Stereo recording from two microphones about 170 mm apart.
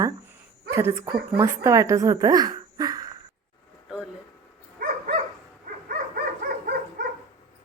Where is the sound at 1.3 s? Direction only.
15° right (ahead or behind).